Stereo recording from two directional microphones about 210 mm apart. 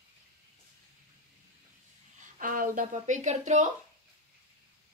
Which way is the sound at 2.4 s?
40° right (ahead or behind).